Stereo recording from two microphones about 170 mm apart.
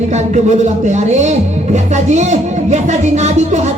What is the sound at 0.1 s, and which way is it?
Music, 45° right (ahead or behind).